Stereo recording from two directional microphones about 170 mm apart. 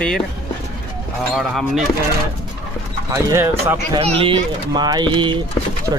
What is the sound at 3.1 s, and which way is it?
Speech, 15° right (ahead or behind).